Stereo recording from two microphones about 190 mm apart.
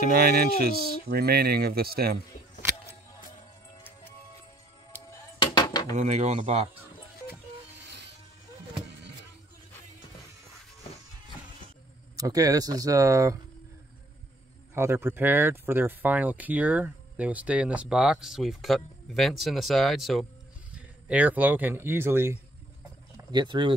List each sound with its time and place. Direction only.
0.0 s speech: 55° right (ahead or behind)
5.4 s dishes: 20° left (ahead or behind)
5.9 s speech: 35° right (ahead or behind)
12.2 s speech: 20° right (ahead or behind)
14.7 s speech: 15° right (ahead or behind)
23.1 s speech: 25° right (ahead or behind)